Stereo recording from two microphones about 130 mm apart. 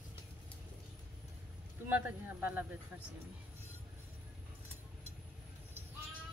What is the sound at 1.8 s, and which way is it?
Speech, 15° right (ahead or behind).